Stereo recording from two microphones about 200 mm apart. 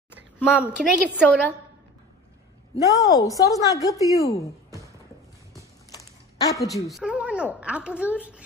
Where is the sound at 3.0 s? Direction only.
15° left (ahead or behind).